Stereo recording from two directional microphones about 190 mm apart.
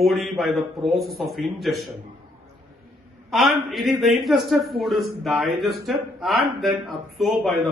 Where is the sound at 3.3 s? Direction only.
Centre (ahead or behind).